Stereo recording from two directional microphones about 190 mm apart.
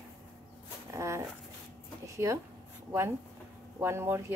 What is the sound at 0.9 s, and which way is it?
Dog, 15° right (ahead or behind).